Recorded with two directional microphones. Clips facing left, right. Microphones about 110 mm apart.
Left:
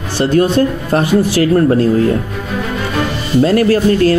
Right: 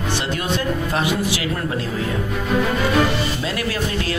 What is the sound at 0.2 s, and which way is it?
Speech, 40° left (ahead or behind).